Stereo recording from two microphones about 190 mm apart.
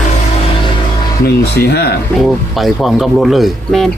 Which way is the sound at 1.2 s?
60° left (ahead or behind).